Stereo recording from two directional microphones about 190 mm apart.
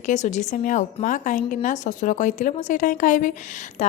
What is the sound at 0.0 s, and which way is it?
Speech, 40° left (ahead or behind).